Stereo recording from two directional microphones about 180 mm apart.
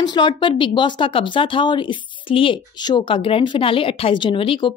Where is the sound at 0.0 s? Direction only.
25° left (ahead or behind).